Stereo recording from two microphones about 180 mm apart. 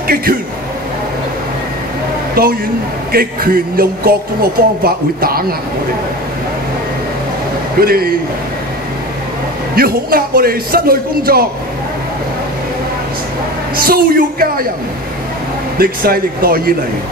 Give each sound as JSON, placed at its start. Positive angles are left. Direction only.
{"t": 0.0, "sound": "a man's voice", "side_deg": -55}
{"t": 2.4, "sound": "speech", "side_deg": -55}
{"t": 7.8, "sound": "speech", "side_deg": -55}
{"t": 9.8, "sound": "speech", "side_deg": -55}
{"t": 13.7, "sound": "speech", "side_deg": -55}
{"t": 15.8, "sound": "speech", "side_deg": -55}